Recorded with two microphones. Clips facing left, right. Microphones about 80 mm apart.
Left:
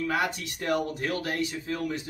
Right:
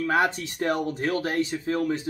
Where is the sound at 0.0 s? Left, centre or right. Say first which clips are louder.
Right 5 dB; right.